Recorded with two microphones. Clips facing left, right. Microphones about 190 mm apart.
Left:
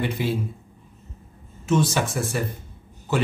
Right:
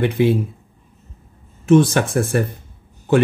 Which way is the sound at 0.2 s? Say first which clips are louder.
Right 12 dB; 60° right (ahead or behind).